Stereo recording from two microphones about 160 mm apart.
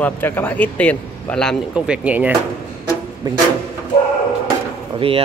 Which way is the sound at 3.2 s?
25° right (ahead or behind).